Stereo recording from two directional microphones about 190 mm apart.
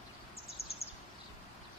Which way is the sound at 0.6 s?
30° left (ahead or behind).